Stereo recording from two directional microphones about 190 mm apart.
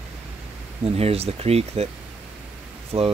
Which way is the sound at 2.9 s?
30° right (ahead or behind).